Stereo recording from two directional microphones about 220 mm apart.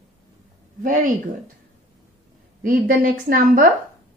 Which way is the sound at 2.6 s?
40° right (ahead or behind).